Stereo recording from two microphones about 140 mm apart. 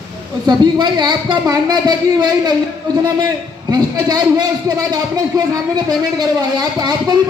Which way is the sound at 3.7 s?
30° right (ahead or behind).